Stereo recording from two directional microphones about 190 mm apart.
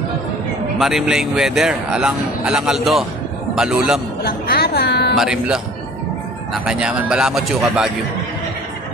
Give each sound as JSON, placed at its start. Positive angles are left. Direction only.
{"t": 0.7, "sound": "a man's voice", "side_deg": 0}
{"t": 4.2, "sound": "a woman's voice", "side_deg": 55}
{"t": 5.1, "sound": "a man's voice", "side_deg": -5}